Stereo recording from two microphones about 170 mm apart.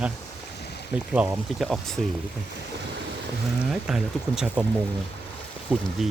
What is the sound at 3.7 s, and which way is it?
Speech, 5° right (ahead or behind).